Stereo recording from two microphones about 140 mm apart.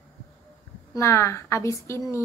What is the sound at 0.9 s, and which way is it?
Speech, 20° left (ahead or behind).